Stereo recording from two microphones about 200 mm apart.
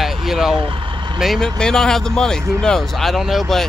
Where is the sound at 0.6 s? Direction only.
25° right (ahead or behind).